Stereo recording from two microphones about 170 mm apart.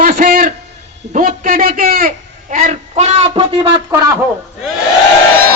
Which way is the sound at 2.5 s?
45° right (ahead or behind).